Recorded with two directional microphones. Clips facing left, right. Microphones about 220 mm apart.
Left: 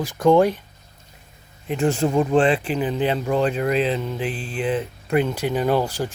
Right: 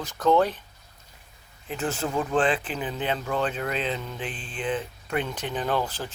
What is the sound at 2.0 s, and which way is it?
Speech, 25° left (ahead or behind).